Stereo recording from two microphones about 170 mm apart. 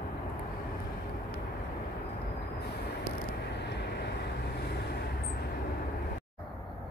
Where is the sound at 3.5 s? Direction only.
80° left.